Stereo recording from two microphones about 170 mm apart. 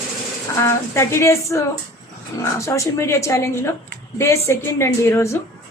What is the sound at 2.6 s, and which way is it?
A woman's voice, 15° left (ahead or behind).